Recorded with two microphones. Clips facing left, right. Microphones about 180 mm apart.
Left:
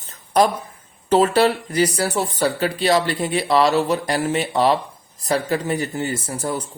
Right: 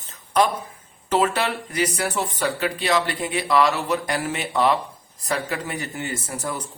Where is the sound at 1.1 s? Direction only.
30° left (ahead or behind).